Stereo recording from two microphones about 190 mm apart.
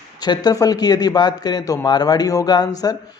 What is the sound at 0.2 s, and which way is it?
Speech, 20° left (ahead or behind).